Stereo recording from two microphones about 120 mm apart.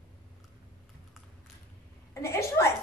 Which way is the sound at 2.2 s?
20° left (ahead or behind).